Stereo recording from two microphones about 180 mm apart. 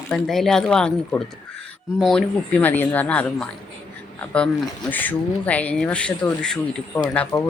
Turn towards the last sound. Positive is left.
turn(degrees=5)  # may be behind; listen again after turning